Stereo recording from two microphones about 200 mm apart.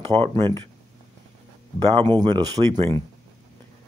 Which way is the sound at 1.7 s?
25° right (ahead or behind).